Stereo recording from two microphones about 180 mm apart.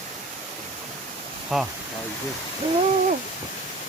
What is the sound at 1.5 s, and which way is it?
Speech, centre (ahead or behind).